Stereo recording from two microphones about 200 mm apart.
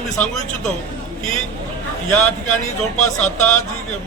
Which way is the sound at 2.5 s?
35° left (ahead or behind).